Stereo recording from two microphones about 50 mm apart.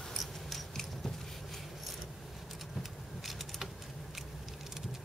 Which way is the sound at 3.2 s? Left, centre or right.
Centre.